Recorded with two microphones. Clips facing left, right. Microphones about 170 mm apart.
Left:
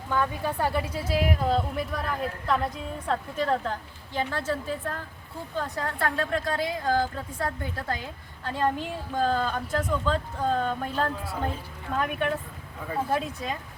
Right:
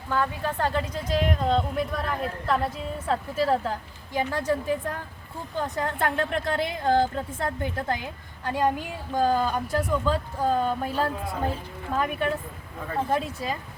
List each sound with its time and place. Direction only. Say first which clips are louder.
0.1 s a woman's voice: even; 15° left (ahead or behind); by 13.6 s centre (ahead or behind)